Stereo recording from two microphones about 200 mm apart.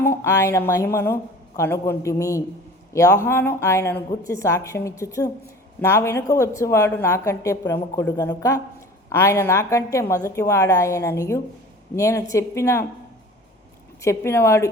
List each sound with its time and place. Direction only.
0.0 s a woman's voice: 15° left (ahead or behind)
14.0 s a woman's voice: 15° left (ahead or behind)